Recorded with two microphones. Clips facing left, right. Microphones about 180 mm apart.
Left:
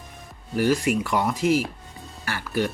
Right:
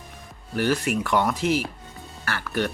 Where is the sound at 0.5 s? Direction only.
10° left (ahead or behind).